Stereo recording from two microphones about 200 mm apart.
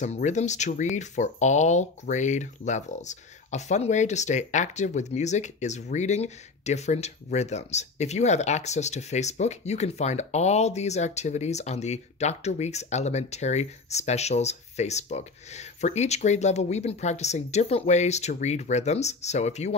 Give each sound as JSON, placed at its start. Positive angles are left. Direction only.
{"t": 0.0, "sound": "speech", "side_deg": 35}